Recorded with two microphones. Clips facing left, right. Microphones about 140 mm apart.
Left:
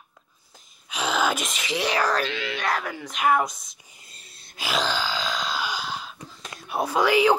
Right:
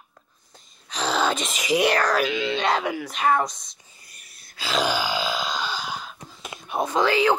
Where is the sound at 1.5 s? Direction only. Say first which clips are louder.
Right 5 dB; 10° right (ahead or behind).